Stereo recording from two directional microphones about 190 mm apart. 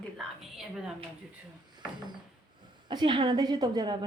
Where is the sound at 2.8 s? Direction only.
25° right (ahead or behind).